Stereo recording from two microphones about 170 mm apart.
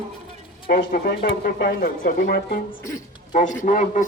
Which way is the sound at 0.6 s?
60° left (ahead or behind).